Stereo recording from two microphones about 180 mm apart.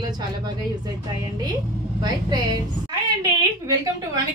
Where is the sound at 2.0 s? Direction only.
20° right (ahead or behind).